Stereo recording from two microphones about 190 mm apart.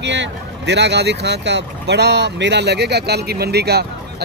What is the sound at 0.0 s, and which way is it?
Speech, 70° right (ahead or behind).